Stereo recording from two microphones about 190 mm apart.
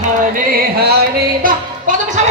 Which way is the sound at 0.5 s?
55° right (ahead or behind).